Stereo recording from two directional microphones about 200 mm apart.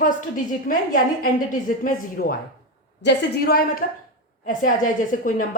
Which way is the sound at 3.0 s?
60° left (ahead or behind).